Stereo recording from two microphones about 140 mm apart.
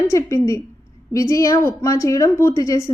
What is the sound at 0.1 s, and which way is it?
A woman's voice, 20° left (ahead or behind).